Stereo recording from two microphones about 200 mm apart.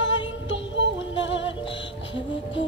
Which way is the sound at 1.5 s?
25° left (ahead or behind).